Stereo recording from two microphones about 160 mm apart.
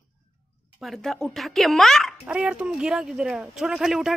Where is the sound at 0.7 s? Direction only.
Centre (ahead or behind).